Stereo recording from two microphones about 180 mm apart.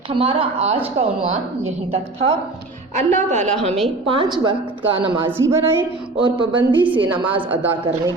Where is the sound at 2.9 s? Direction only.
40° right (ahead or behind).